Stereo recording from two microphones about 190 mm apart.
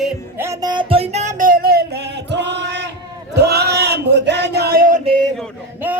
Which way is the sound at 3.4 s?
60° right (ahead or behind).